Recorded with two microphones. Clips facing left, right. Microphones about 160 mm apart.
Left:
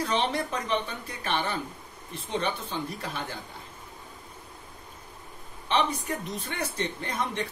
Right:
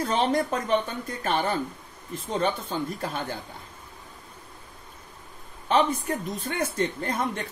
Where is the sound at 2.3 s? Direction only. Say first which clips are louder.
Right 3 dB; 45° right (ahead or behind).